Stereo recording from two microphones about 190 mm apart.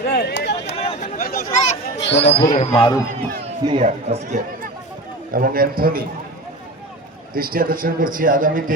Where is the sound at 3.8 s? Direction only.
35° right (ahead or behind).